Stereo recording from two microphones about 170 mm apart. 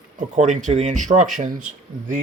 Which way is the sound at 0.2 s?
45° right (ahead or behind).